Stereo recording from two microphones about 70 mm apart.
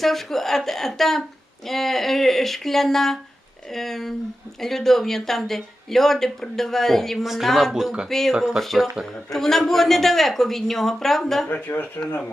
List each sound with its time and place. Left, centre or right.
0.0 s speech: centre
11.4 s speech: left